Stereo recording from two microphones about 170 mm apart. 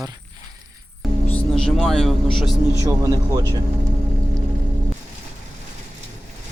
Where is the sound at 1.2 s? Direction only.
5° left (ahead or behind).